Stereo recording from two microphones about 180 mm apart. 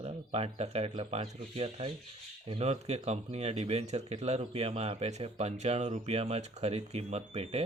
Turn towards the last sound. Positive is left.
turn(degrees=-35)  # may be behind; listen again after turning